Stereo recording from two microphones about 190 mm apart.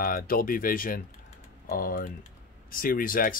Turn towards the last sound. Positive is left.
turn(degrees=50)  # may be behind; listen again after turning